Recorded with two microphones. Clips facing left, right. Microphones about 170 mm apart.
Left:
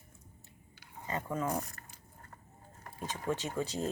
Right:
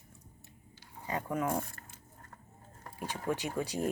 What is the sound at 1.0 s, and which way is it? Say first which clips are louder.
Speech: right 2 dB; 10° right (ahead or behind).